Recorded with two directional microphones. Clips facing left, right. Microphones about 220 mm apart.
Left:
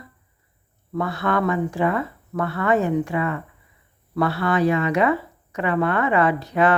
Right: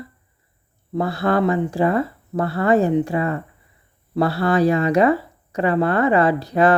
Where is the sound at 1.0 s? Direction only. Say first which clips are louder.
Right 4 dB; 35° right (ahead or behind).